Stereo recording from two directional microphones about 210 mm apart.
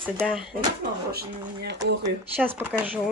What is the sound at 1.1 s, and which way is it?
Speech, 50° right (ahead or behind).